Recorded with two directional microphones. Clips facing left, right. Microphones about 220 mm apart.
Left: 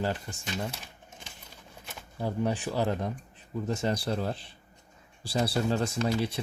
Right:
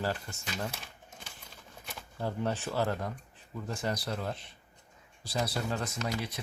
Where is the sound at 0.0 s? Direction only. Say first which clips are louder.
Left 3 dB; 20° left (ahead or behind).